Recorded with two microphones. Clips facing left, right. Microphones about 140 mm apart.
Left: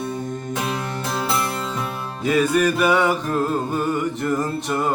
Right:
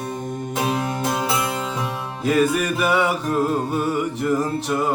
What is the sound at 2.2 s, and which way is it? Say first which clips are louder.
Music: left 1 dB; centre (ahead or behind).